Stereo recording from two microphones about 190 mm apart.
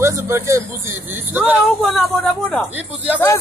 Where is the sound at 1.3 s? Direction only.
5° right (ahead or behind).